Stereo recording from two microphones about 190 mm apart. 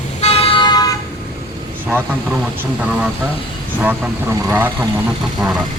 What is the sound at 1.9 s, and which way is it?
A man's voice, 5° right (ahead or behind).